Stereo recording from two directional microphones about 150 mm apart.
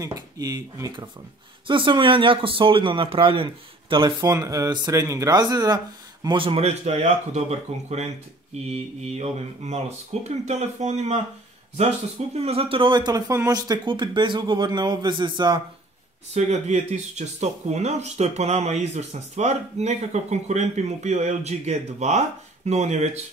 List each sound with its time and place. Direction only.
0.0 s speech: 25° right (ahead or behind)
1.7 s speech: 35° right (ahead or behind)
9.2 s speech: 45° right (ahead or behind)
12.4 s speech: 40° right (ahead or behind)
16.3 s speech: 50° right (ahead or behind)